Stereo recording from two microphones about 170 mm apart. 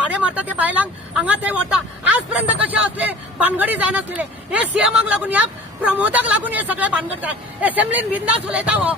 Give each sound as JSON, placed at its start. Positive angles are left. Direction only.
{"t": 0.0, "sound": "speech", "side_deg": -10}